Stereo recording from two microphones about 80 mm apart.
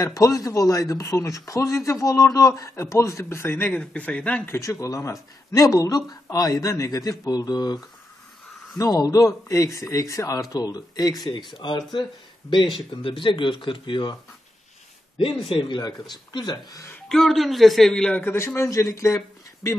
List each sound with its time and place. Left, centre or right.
0.0 s a man's voice: left
3.8 s speech: centre
4.5 s speech: left
15.7 s speech: left
17.1 s speech: centre
18.2 s a man's voice: left